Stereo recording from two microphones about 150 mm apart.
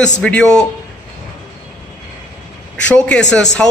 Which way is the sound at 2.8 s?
5° left (ahead or behind).